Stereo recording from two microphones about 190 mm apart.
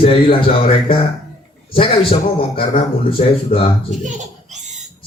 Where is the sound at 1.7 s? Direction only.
30° left (ahead or behind).